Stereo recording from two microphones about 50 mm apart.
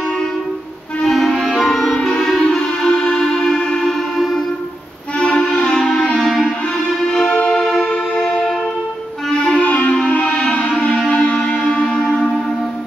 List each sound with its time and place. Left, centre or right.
1.0 s music: centre
5.6 s music: centre
9.3 s clarinet: centre
9.7 s music: left
11.8 s church bell: centre